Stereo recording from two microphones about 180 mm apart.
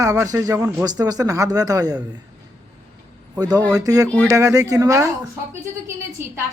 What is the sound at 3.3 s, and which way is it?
A man's voice, 20° right (ahead or behind).